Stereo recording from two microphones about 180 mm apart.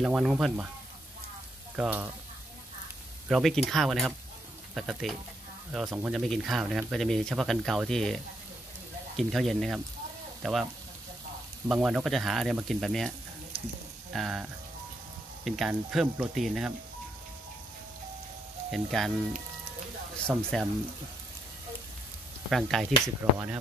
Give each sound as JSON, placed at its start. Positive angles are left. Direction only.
{"t": 0.0, "sound": "speech", "side_deg": -5}
{"t": 1.8, "sound": "frying", "side_deg": -10}
{"t": 3.3, "sound": "speech", "side_deg": 0}
{"t": 11.7, "sound": "speech", "side_deg": -5}
{"t": 14.1, "sound": "speech", "side_deg": 0}
{"t": 18.7, "sound": "speech", "side_deg": 0}
{"t": 20.2, "sound": "speech", "side_deg": 5}
{"t": 22.5, "sound": "speech", "side_deg": 0}
{"t": 23.2, "sound": "frying", "side_deg": -15}